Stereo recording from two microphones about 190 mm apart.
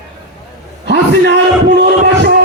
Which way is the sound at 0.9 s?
65° right (ahead or behind).